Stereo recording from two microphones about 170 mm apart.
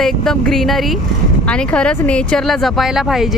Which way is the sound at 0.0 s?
5° left (ahead or behind).